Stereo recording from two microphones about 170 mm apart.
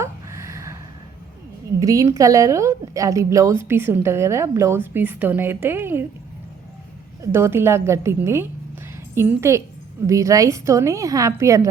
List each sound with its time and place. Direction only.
0.0 s a sound: 15° right (ahead or behind)
1.8 s a woman's voice: 20° right (ahead or behind)
7.2 s a woman's voice: 15° right (ahead or behind)